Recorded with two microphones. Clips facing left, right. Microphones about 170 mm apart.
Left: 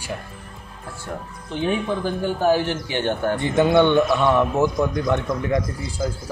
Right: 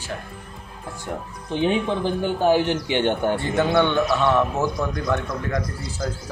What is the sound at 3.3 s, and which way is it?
A man's voice, 20° left (ahead or behind).